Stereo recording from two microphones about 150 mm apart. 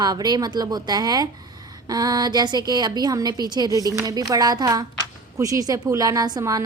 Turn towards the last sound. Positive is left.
turn(degrees=-25)  # may be behind; listen again after turning